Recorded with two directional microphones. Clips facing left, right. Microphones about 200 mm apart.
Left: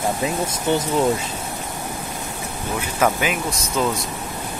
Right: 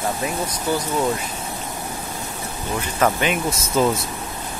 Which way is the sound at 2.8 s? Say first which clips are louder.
Even; 5° left (ahead or behind).